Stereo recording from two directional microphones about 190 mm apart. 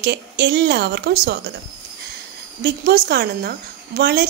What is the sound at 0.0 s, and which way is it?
Speech, 65° right (ahead or behind).